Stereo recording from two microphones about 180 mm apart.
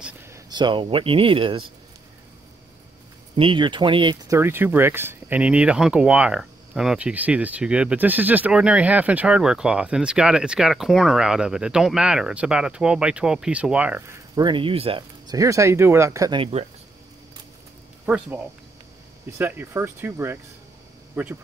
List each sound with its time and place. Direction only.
0.0 s a sound: 15° right (ahead or behind)
0.5 s speech: 25° right (ahead or behind)
3.3 s speech: 25° right (ahead or behind)
18.0 s speech: 10° right (ahead or behind)